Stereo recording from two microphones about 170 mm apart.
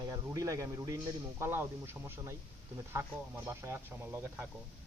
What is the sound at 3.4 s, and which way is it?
Speech, 15° right (ahead or behind).